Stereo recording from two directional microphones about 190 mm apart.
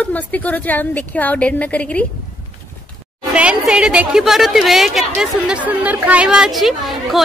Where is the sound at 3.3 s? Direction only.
5° right (ahead or behind).